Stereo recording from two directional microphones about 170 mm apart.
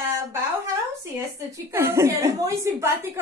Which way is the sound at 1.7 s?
15° right (ahead or behind).